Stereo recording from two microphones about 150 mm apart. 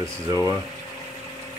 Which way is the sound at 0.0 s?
20° right (ahead or behind).